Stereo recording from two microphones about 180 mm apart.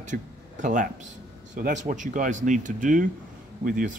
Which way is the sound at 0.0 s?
45° right (ahead or behind).